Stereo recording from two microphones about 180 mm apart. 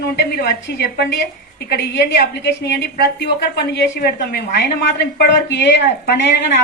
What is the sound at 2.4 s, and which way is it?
A woman's voice, 70° left (ahead or behind).